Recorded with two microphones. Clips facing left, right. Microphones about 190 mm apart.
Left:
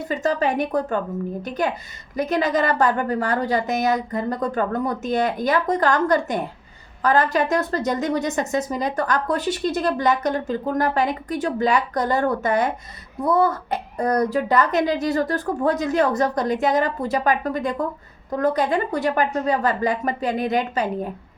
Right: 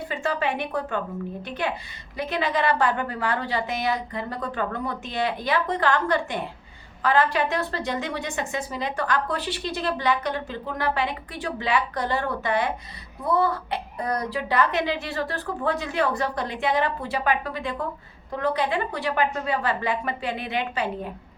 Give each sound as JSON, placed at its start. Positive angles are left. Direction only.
{"t": 0.1, "sound": "a woman's voice", "side_deg": 40}